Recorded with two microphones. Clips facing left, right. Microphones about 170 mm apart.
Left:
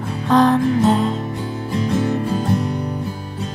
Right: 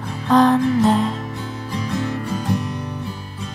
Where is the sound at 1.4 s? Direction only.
20° left (ahead or behind).